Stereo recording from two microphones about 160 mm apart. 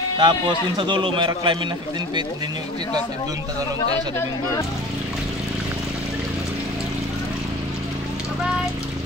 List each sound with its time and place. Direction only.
0.2 s speech: 30° right (ahead or behind)